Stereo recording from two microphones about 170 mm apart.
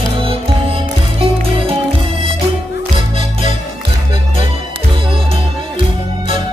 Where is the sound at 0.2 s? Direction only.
30° right (ahead or behind).